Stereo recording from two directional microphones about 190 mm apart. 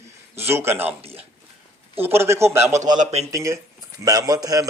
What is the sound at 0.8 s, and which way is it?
Speech, 30° right (ahead or behind).